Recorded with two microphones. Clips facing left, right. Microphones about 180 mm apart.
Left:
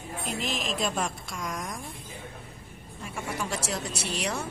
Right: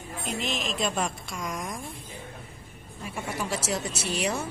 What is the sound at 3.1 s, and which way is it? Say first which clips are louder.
A woman's voice: right 1 dB; 5° right (ahead or behind).